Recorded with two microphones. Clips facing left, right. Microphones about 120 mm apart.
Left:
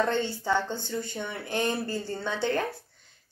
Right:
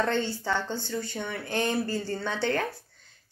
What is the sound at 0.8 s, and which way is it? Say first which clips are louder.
Speech: even; 15° left (ahead or behind).